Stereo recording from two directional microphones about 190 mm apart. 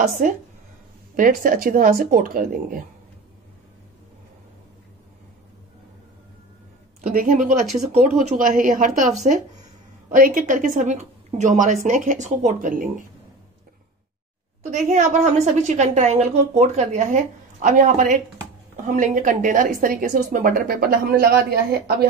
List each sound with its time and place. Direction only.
0.2 s speech: 40° right (ahead or behind)
7.0 s speech: 45° right (ahead or behind)
7.6 s speech: centre (ahead or behind)
7.9 s speech: 35° right (ahead or behind)
14.6 s a woman's voice: 40° right (ahead or behind); by 22.0 s 55° right (ahead or behind)